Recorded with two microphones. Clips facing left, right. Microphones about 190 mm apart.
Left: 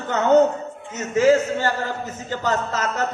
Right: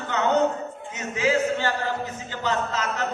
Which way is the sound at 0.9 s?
45° left (ahead or behind).